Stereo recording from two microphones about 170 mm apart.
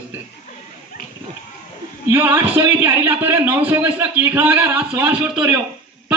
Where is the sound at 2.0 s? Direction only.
15° right (ahead or behind).